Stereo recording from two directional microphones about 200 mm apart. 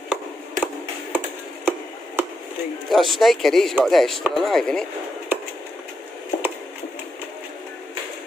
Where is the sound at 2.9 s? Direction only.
Centre (ahead or behind).